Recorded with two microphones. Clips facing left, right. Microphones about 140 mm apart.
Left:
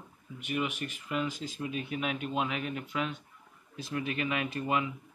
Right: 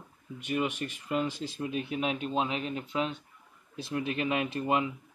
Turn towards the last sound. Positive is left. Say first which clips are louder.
# right 2 dB
turn(degrees=-30)  # may be behind; listen again after turning